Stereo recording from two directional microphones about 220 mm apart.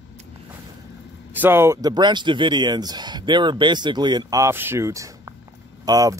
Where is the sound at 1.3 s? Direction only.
10° right (ahead or behind).